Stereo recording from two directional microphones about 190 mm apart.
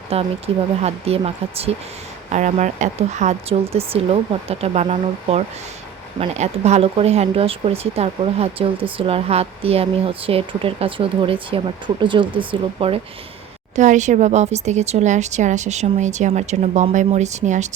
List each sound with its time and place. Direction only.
0.1 s speech: 30° right (ahead or behind)
13.7 s speech: 40° right (ahead or behind)